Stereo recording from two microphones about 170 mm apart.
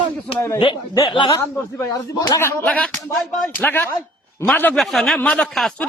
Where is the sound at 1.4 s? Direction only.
20° left (ahead or behind).